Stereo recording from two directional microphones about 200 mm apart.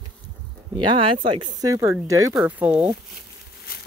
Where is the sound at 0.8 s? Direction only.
25° right (ahead or behind); by 3.2 s 5° right (ahead or behind).